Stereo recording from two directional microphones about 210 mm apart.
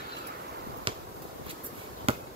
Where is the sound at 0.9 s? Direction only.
25° right (ahead or behind).